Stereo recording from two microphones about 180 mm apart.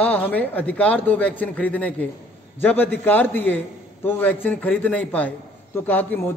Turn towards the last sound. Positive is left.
turn(degrees=10)  # may be behind; listen again after turning